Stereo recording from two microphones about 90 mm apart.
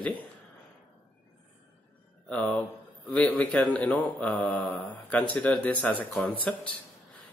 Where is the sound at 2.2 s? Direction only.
15° left (ahead or behind).